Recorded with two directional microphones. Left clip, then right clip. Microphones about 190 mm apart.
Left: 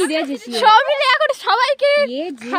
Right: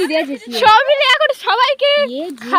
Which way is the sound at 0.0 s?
10° left (ahead or behind).